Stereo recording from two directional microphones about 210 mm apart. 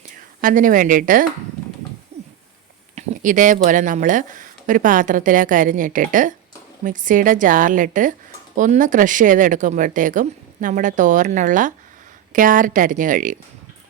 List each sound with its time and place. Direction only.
0.4 s speech: 40° right (ahead or behind)
2.1 s a sound: 30° right (ahead or behind)
2.9 s speech: 40° right (ahead or behind)